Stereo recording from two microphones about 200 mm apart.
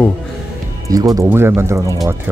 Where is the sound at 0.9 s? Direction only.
15° right (ahead or behind).